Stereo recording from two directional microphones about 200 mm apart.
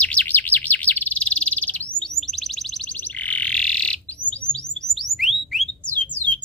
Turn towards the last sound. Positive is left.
turn(degrees=10)  # may be behind; listen again after turning